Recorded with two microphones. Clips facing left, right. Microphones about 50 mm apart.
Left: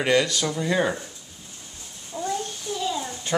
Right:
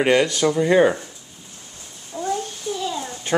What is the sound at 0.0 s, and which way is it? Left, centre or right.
Speech, right.